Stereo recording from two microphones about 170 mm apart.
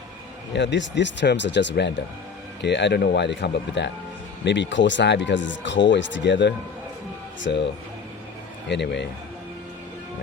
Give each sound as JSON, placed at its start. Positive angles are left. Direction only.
{"t": 0.5, "sound": "speech", "side_deg": 90}
{"t": 8.7, "sound": "speech", "side_deg": 90}